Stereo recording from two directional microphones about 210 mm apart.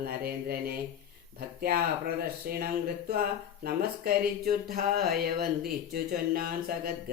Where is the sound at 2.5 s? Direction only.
45° right (ahead or behind).